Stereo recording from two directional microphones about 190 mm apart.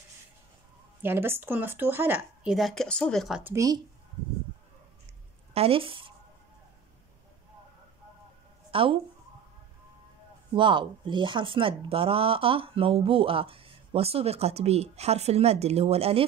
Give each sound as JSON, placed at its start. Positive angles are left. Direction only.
{"t": 1.0, "sound": "speech", "side_deg": -10}
{"t": 3.5, "sound": "speech", "side_deg": -20}
{"t": 5.5, "sound": "speech", "side_deg": -30}
{"t": 8.7, "sound": "speech", "side_deg": -30}
{"t": 10.5, "sound": "speech", "side_deg": -25}